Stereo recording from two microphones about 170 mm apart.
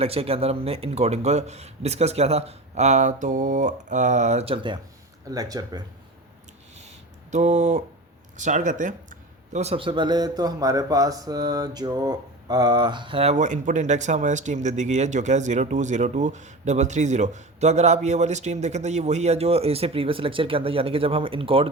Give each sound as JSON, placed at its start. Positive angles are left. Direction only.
{"t": 0.0, "sound": "speech", "side_deg": -35}
{"t": 6.7, "sound": "a sound", "side_deg": -40}
{"t": 8.4, "sound": "speech", "side_deg": -45}